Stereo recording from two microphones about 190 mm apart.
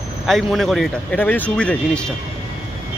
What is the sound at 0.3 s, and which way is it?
Speech, centre (ahead or behind).